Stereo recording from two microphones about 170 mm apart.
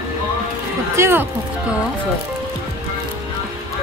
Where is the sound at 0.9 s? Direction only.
15° right (ahead or behind).